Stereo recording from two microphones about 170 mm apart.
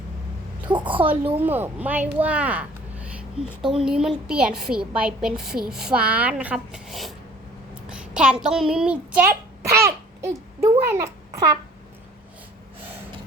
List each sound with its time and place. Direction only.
0.7 s a woman's voice: 30° right (ahead or behind)
1.1 s a child's voice: 10° right (ahead or behind)